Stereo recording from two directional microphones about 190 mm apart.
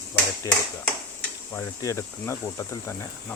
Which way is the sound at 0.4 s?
15° left (ahead or behind).